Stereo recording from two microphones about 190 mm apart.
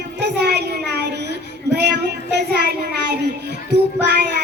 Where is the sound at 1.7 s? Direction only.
60° right (ahead or behind).